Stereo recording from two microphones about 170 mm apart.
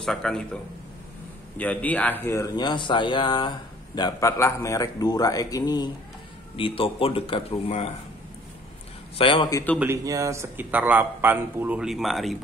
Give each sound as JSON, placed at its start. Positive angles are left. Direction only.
{"t": 0.0, "sound": "speech", "side_deg": 5}
{"t": 1.6, "sound": "speech", "side_deg": 10}
{"t": 9.2, "sound": "speech", "side_deg": 30}
{"t": 9.5, "sound": "speech", "side_deg": 20}
{"t": 9.8, "sound": "a man's voice", "side_deg": -15}